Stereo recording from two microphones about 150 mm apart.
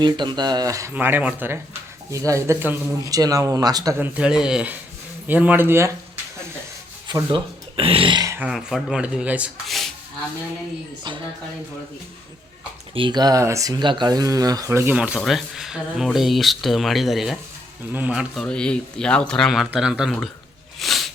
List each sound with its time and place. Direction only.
0.0 s speech: 30° right (ahead or behind)
3.9 s speech: 10° right (ahead or behind)
7.1 s speech: 30° right (ahead or behind)
8.3 s speech: 10° right (ahead or behind)
12.9 s speech: 30° right (ahead or behind); by 18.4 s 5° right (ahead or behind)
18.4 s speech: 5° left (ahead or behind)
20.7 s a sound: centre (ahead or behind)